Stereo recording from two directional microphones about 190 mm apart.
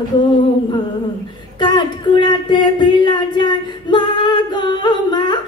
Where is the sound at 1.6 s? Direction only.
25° left (ahead or behind).